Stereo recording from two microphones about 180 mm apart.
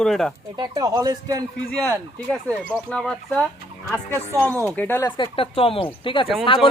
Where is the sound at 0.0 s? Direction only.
5° left (ahead or behind).